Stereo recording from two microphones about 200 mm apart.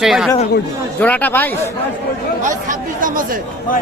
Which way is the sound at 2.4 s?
40° right (ahead or behind).